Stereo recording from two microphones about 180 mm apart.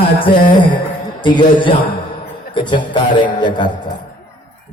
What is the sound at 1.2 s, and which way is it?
Music, 25° left (ahead or behind).